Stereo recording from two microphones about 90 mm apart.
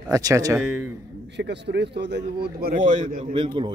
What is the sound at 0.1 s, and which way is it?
Speech, 40° right (ahead or behind).